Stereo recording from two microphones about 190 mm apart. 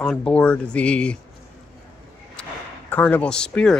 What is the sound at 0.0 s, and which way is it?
Speech, 5° left (ahead or behind).